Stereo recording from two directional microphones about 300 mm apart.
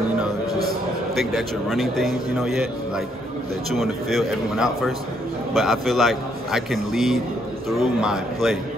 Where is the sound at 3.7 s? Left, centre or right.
Centre.